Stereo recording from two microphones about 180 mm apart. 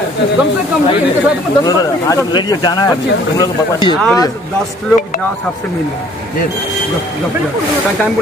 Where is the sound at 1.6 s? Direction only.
20° left (ahead or behind).